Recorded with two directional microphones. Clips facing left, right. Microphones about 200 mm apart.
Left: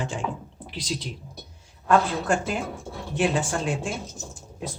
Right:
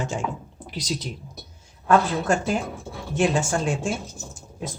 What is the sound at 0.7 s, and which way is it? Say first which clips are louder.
Speech: right 2 dB; 45° right (ahead or behind).